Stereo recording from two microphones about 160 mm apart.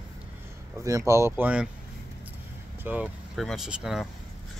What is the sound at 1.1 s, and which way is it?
Speech, 15° right (ahead or behind).